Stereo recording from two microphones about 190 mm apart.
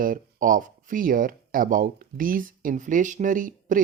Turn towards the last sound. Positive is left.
turn(degrees=-45)  # may be behind; listen again after turning